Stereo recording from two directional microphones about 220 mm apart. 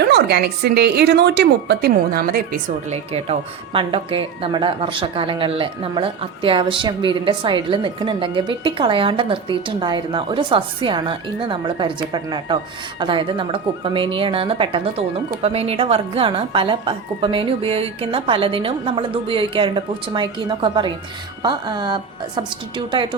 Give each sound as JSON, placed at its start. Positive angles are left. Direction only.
{"t": 0.0, "sound": "a woman's voice", "side_deg": -50}